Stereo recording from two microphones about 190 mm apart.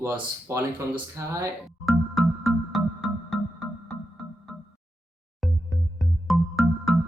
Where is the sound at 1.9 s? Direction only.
Centre (ahead or behind).